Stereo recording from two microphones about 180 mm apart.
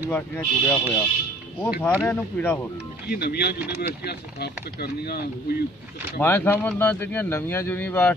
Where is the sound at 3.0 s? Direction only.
60° left (ahead or behind).